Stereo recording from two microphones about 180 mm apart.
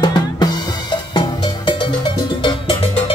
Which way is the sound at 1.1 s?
25° left (ahead or behind).